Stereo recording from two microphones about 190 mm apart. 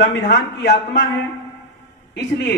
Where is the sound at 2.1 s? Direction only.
70° left (ahead or behind).